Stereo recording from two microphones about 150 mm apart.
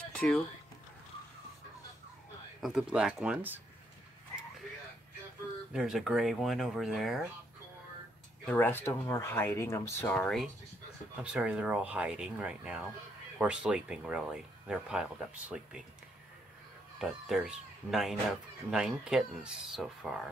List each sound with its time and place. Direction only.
0.1 s a sound: 5° left (ahead or behind)
2.6 s speech: 5° right (ahead or behind)
5.7 s speech: 5° right (ahead or behind)
8.5 s speech: 15° left (ahead or behind)
11.3 s speech: 5° right (ahead or behind)
17.0 s speech: centre (ahead or behind)